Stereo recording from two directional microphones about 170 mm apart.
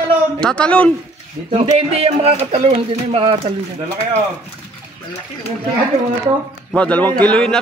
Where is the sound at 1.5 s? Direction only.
35° right (ahead or behind).